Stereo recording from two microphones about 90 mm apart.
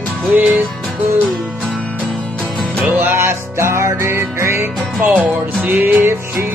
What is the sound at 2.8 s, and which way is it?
Music, 20° right (ahead or behind).